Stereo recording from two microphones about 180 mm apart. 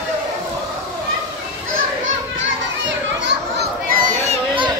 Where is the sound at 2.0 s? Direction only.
90° right; by 3.7 s 75° right (ahead or behind).